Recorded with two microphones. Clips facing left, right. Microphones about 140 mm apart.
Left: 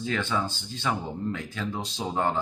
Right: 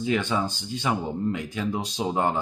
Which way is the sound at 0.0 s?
15° right (ahead or behind).